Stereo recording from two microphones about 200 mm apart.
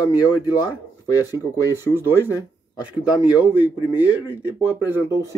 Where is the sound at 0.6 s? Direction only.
20° left (ahead or behind).